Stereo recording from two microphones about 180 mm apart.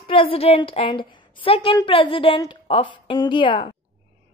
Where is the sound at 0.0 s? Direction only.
30° left (ahead or behind).